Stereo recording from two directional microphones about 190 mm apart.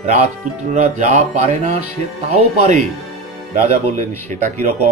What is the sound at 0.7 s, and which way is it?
Speech, 40° right (ahead or behind).